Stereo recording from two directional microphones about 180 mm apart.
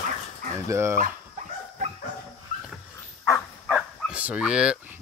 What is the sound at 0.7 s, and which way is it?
Speech, 15° right (ahead or behind).